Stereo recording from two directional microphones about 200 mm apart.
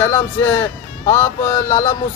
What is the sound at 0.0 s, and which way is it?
Speech, 10° left (ahead or behind).